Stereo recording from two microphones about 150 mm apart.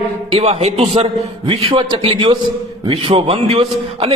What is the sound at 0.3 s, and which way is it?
A man's voice, 40° right (ahead or behind).